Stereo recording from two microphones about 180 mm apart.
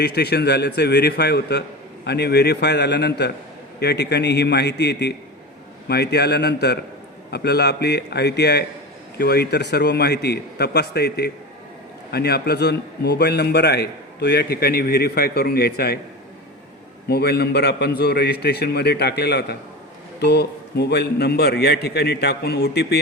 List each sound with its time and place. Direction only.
0.0 s a man's voice: 65° left (ahead or behind)
17.1 s a man's voice: 65° left (ahead or behind)